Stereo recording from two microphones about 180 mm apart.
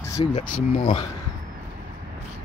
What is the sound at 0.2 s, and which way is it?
Speech, 30° left (ahead or behind).